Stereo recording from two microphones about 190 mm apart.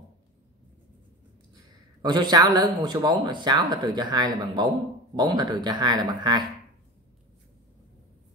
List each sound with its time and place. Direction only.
1.5 s speech: 20° right (ahead or behind)